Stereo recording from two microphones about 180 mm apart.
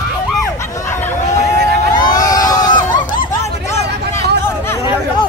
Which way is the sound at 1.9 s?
20° left (ahead or behind).